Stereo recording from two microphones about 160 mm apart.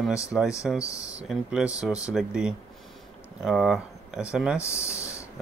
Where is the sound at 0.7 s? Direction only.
20° left (ahead or behind).